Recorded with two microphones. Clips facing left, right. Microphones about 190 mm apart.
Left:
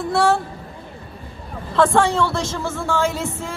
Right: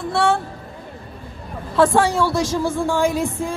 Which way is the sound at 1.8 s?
10° right (ahead or behind).